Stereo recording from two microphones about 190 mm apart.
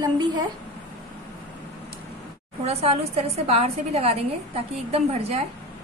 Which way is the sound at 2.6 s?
35° right (ahead or behind).